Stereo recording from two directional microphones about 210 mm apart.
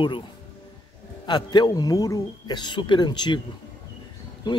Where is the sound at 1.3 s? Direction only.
20° left (ahead or behind).